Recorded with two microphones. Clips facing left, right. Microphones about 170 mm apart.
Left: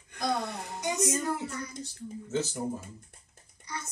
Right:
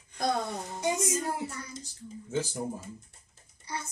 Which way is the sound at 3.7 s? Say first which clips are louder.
Right 2 dB; 30° right (ahead or behind).